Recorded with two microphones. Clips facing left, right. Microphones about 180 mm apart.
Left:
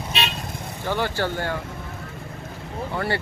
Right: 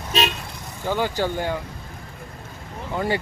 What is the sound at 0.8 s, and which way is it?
Speech, 15° right (ahead or behind).